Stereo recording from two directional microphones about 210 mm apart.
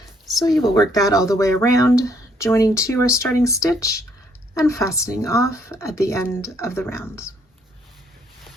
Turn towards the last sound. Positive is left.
turn(degrees=15)  # may be behind; listen again after turning